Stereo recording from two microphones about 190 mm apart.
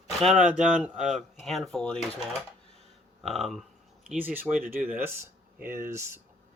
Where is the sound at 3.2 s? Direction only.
Centre (ahead or behind).